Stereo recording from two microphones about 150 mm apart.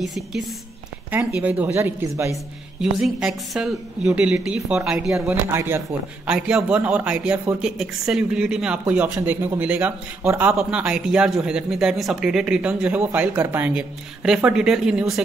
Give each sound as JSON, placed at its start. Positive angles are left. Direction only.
{"t": 0.0, "sound": "speech", "side_deg": 0}
{"t": 2.3, "sound": "speech", "side_deg": -5}
{"t": 5.1, "sound": "speech", "side_deg": -15}
{"t": 6.2, "sound": "speech", "side_deg": -5}